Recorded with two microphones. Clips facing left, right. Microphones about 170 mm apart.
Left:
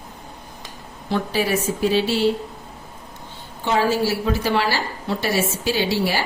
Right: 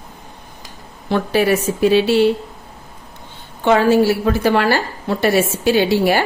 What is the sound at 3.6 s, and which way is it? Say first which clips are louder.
A woman's voice: right 7 dB; 60° right (ahead or behind).